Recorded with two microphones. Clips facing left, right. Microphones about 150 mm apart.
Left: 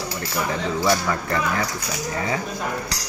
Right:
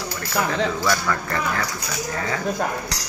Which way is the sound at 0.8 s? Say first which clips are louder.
Left 2 dB; 20° left (ahead or behind).